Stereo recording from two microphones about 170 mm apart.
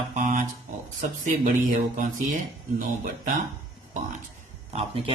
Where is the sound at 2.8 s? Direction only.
50° right (ahead or behind).